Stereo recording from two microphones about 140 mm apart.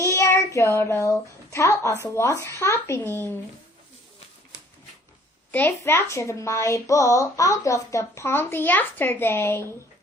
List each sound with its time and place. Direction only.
0.0 s speech: 20° left (ahead or behind)
5.5 s speech: 15° left (ahead or behind)